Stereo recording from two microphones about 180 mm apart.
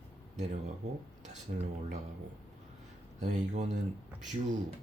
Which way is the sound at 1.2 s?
40° right (ahead or behind).